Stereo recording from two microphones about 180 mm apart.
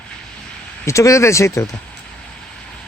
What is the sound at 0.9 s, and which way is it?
Speech, 15° left (ahead or behind).